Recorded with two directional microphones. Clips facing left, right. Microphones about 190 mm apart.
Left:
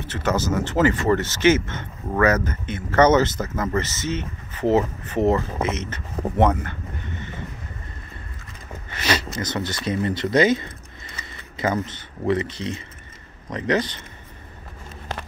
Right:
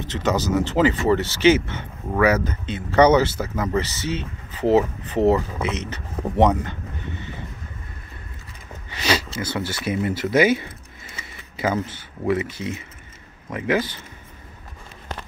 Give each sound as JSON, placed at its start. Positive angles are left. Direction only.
{"t": 0.0, "sound": "speech", "side_deg": -15}
{"t": 8.9, "sound": "a sound", "side_deg": -10}
{"t": 9.4, "sound": "a man's voice", "side_deg": -5}